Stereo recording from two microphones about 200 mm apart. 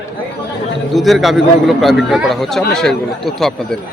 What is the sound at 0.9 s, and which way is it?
A man's voice, centre (ahead or behind).